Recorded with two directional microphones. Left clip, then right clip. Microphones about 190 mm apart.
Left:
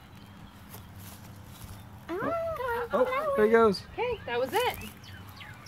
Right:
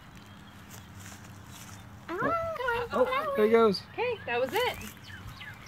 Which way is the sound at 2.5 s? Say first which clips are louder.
Right 1 dB; 10° left (ahead or behind).